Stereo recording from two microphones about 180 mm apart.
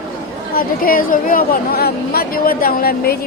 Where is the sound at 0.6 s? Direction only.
55° left (ahead or behind).